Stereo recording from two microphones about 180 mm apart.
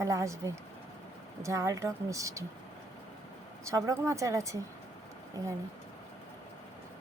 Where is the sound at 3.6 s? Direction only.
20° right (ahead or behind).